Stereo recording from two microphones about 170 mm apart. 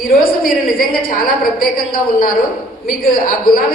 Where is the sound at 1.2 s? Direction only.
60° left (ahead or behind).